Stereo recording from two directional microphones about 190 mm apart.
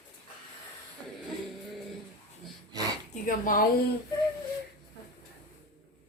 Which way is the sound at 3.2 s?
45° left (ahead or behind).